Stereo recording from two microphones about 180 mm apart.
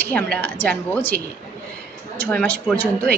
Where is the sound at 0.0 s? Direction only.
10° left (ahead or behind).